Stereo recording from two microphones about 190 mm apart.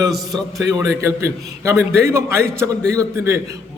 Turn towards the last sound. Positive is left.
turn(degrees=-15)  # may be behind; listen again after turning